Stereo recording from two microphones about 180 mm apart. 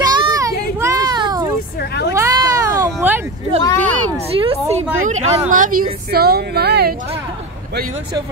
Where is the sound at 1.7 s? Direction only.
65° left (ahead or behind).